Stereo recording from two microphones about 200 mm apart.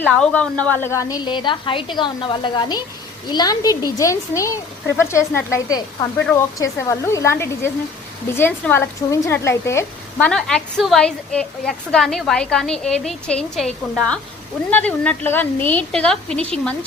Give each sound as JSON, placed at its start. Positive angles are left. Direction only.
{"t": 0.0, "sound": "a woman's voice", "side_deg": 5}